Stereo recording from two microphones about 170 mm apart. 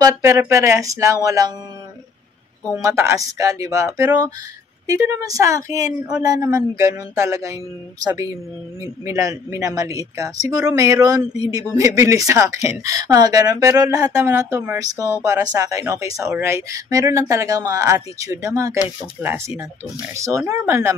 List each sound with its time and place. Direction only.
0.0 s speech: 20° right (ahead or behind)
2.8 s speech: 15° right (ahead or behind)